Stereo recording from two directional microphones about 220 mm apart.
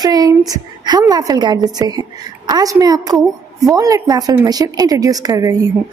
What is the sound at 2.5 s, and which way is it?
A woman's voice, 15° right (ahead or behind).